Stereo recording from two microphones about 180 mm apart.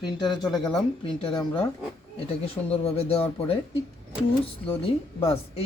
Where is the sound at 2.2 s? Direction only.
35° left (ahead or behind).